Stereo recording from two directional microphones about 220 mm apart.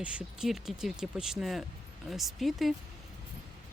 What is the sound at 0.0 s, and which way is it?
Speech, 5° right (ahead or behind).